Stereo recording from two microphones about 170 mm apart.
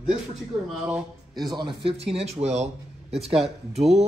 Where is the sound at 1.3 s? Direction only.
25° right (ahead or behind).